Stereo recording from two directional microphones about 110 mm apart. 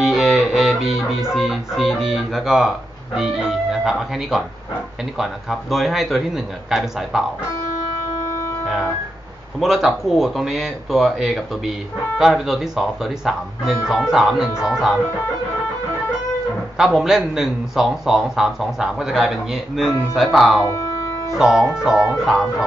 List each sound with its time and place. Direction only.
0.0 s music: centre (ahead or behind)
1.3 s speech: centre (ahead or behind)
9.6 s speech: 5° right (ahead or behind)
16.7 s speech: 5° right (ahead or behind)